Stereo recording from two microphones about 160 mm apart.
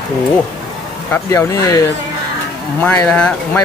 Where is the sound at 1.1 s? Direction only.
15° left (ahead or behind).